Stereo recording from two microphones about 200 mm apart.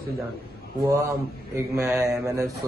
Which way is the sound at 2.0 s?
15° right (ahead or behind).